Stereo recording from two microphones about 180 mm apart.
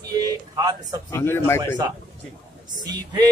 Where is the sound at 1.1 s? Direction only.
10° left (ahead or behind).